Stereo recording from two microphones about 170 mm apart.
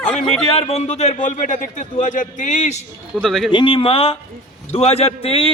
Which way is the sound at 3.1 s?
Centre (ahead or behind).